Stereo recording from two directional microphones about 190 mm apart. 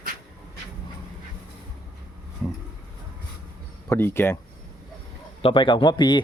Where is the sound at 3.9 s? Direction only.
10° left (ahead or behind).